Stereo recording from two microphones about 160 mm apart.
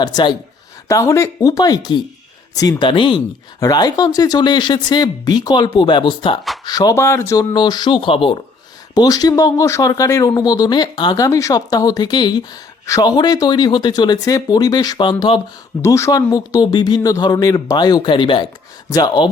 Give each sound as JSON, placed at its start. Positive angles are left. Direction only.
{"t": 0.0, "sound": "speech", "side_deg": 25}
{"t": 15.8, "sound": "speech", "side_deg": 20}